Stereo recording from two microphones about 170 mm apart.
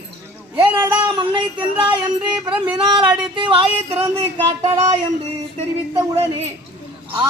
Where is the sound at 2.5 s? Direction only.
5° right (ahead or behind).